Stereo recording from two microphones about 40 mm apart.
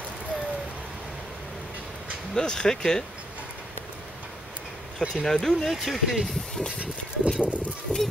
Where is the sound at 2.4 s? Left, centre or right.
Centre.